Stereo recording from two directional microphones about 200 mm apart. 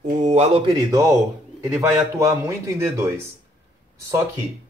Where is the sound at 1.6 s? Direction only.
15° right (ahead or behind).